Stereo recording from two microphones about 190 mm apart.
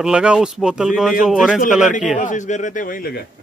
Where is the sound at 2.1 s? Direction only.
40° left (ahead or behind).